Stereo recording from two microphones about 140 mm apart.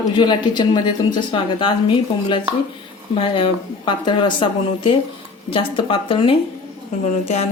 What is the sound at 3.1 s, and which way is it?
Speech, 40° left (ahead or behind).